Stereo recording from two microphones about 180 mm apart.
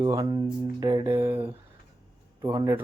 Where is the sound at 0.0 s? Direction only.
20° right (ahead or behind).